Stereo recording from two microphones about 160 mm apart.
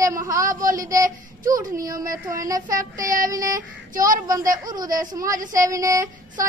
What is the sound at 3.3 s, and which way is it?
Speech, 20° right (ahead or behind).